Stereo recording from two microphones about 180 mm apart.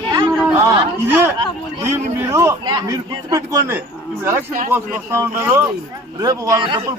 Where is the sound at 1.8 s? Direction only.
15° right (ahead or behind).